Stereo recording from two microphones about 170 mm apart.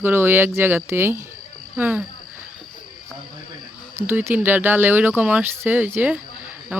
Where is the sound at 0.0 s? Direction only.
10° right (ahead or behind).